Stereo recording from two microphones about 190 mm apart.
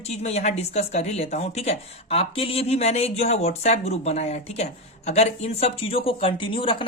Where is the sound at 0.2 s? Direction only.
35° left (ahead or behind).